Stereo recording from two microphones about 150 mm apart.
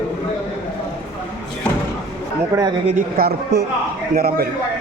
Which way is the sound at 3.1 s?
90° right.